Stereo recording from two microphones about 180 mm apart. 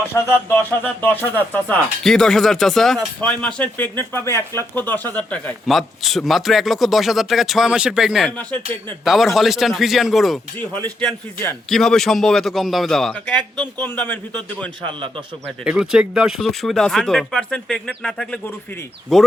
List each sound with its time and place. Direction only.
0.8 s speech: 10° left (ahead or behind)
14.8 s a man's voice: 25° right (ahead or behind)
15.6 s speech: 5° right (ahead or behind)